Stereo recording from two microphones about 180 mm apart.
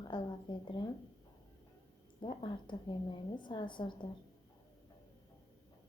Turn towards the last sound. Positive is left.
turn(degrees=25)  # may be behind; listen again after turning